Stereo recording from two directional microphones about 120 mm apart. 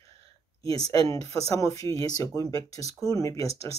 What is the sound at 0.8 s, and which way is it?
Speech, 30° left (ahead or behind).